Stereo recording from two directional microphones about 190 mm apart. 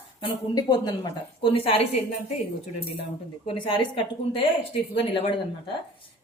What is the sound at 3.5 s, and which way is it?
A woman's voice, 25° left (ahead or behind).